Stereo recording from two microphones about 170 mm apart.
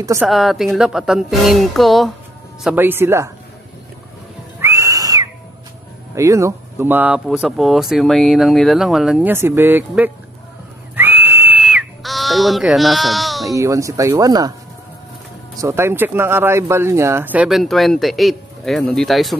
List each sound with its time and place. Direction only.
0.2 s speech: centre (ahead or behind)
2.7 s speech: 10° right (ahead or behind)
4.6 s whistle: 15° right (ahead or behind)
6.1 s speech: 15° right (ahead or behind)
7.2 s speech: centre (ahead or behind)
11.0 s whistle: 10° right (ahead or behind)
13.5 s speech: 20° right (ahead or behind)
15.5 s speech: 15° right (ahead or behind); by 19.3 s centre (ahead or behind)